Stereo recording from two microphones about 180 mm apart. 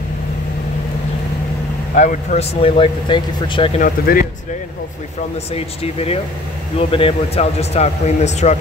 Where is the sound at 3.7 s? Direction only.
50° left (ahead or behind).